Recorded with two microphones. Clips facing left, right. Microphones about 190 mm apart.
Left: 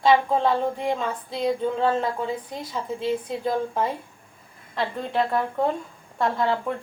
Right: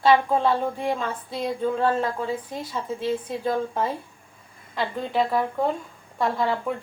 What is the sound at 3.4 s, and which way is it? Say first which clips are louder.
A woman's voice: even; centre (ahead or behind).